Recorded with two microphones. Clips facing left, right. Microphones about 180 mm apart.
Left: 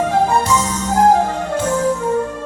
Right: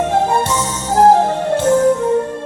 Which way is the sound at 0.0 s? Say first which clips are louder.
Even; 30° right (ahead or behind).